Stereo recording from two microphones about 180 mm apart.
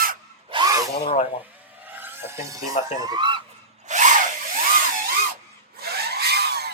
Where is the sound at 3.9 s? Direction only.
45° right (ahead or behind).